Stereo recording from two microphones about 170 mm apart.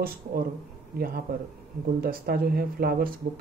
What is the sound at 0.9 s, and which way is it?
Speech, 65° right (ahead or behind).